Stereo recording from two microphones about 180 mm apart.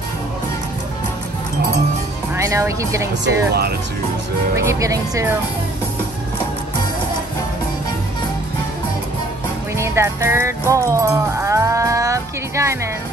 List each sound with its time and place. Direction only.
2.3 s speech: 15° right (ahead or behind)
3.3 s speech: 60° right (ahead or behind)
4.6 s music: 15° right (ahead or behind)
9.8 s music: 15° right (ahead or behind)